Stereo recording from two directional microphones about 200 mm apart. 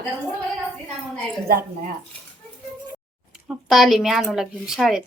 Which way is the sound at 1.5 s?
45° right (ahead or behind).